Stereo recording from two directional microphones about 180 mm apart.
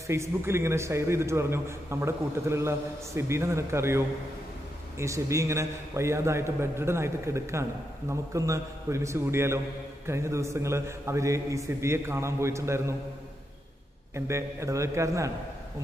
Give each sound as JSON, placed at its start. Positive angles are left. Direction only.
{"t": 0.0, "sound": "a man's voice", "side_deg": -15}
{"t": 14.1, "sound": "a man's voice", "side_deg": -15}